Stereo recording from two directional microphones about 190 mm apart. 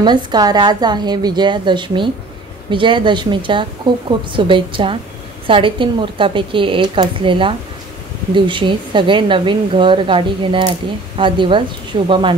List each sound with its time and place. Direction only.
0.0 s speech: 20° right (ahead or behind)